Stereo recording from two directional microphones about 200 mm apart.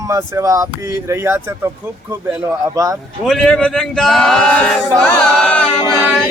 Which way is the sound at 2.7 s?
15° right (ahead or behind).